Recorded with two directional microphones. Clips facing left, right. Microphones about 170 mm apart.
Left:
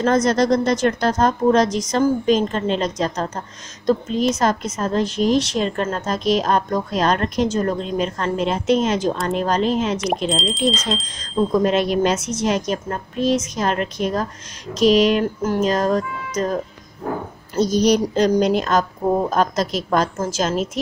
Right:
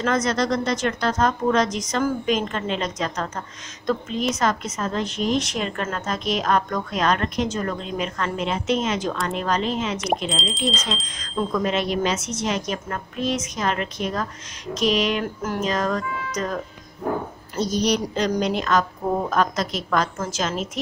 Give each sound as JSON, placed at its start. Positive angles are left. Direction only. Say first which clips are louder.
{"t": 0.0, "sound": "a woman's voice", "louder": "left 5 dB", "side_deg": 40}
{"t": 9.9, "sound": "speech", "louder": "left 3 dB", "side_deg": 0}
{"t": 11.1, "sound": "a woman's voice", "louder": "left 7 dB", "side_deg": 35}
{"t": 17.6, "sound": "a woman's voice", "louder": "left 6 dB", "side_deg": 40}